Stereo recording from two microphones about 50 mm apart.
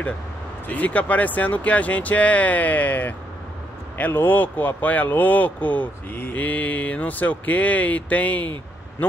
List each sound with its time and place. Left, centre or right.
0.7 s speech: left